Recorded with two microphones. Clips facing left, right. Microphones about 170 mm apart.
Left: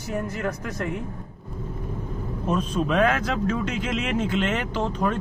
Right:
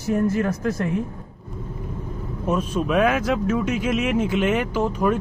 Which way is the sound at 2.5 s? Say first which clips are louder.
Right 2 dB; 10° right (ahead or behind).